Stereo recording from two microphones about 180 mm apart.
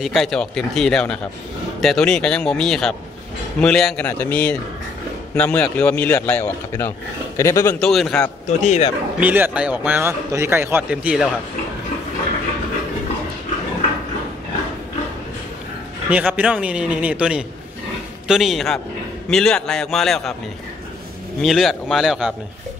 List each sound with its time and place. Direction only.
0.0 s a man's voice: centre (ahead or behind); by 7.7 s 15° left (ahead or behind)
7.8 s speech: centre (ahead or behind)
8.5 s speech: 40° left (ahead or behind)
9.2 s a man's voice: 10° right (ahead or behind)
16.1 s a man's voice: 5° right (ahead or behind)
21.4 s speech: centre (ahead or behind)